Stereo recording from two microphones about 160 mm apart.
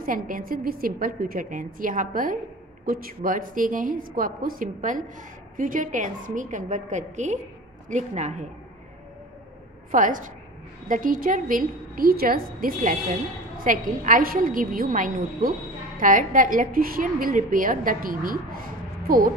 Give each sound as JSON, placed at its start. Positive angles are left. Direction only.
{"t": 0.0, "sound": "a woman's voice", "side_deg": -60}
{"t": 9.8, "sound": "a woman's voice", "side_deg": -55}